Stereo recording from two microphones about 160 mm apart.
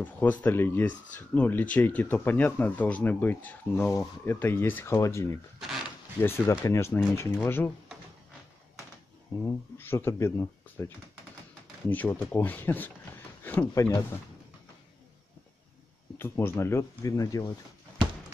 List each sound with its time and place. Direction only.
0.0 s speech: 10° left (ahead or behind)
5.6 s a sound: centre (ahead or behind)
6.2 s speech: 15° left (ahead or behind)
9.5 s speech: 15° left (ahead or behind)
11.9 s speech: 10° left (ahead or behind)
16.2 s speech: 15° left (ahead or behind)